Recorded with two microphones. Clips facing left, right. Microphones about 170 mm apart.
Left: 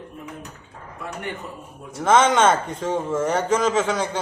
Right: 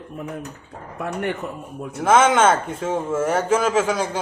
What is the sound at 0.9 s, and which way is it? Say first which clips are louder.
Speech: right 7 dB; 55° right (ahead or behind).